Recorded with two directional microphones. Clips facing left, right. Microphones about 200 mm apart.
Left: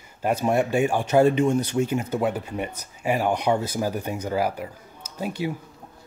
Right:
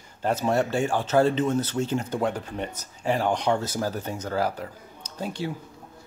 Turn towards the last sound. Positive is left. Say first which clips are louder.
# left 3 dB
turn(degrees=10)  # may be behind; listen again after turning